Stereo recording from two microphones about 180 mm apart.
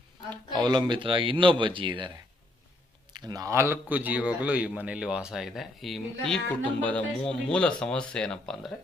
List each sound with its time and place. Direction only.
0.6 s a man's voice: 25° right (ahead or behind); by 8.7 s 5° left (ahead or behind)